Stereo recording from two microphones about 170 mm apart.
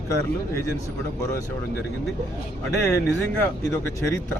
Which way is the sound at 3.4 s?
15° left (ahead or behind).